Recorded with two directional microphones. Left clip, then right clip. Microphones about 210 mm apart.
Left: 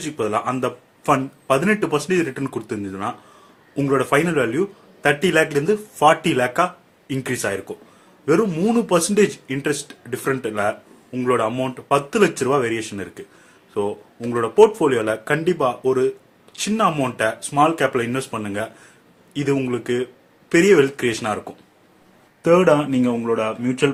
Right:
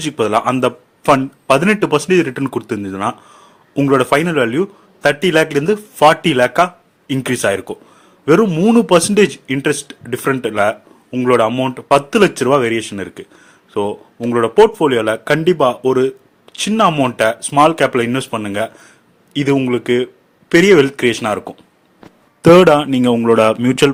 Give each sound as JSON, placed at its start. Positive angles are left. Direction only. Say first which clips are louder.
{"t": 0.0, "sound": "speech", "louder": "right 7 dB", "side_deg": -45}